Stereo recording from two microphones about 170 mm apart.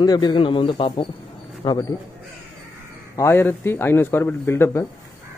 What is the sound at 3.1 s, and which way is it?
A man's voice, 15° left (ahead or behind).